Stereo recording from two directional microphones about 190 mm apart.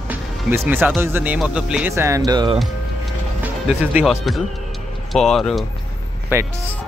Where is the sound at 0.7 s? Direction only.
10° right (ahead or behind).